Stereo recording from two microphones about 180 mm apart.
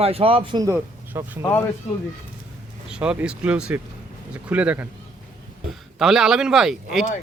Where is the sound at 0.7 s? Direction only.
10° right (ahead or behind).